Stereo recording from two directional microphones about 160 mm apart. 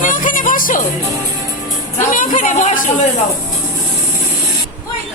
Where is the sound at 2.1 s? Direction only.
55° left (ahead or behind).